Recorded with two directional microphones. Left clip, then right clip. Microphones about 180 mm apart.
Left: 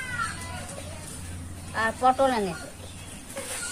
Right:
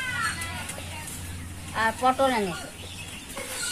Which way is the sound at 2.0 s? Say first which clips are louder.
Left 2 dB; 15° left (ahead or behind).